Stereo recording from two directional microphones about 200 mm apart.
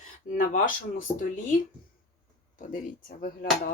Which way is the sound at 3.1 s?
50° left (ahead or behind).